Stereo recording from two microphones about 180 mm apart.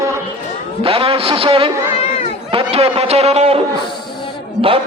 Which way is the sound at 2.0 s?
35° left (ahead or behind).